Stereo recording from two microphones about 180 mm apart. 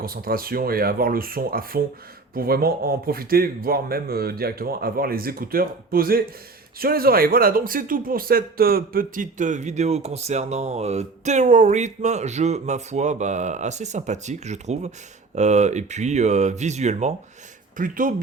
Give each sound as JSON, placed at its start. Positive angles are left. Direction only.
{"t": 0.0, "sound": "a man's voice", "side_deg": -55}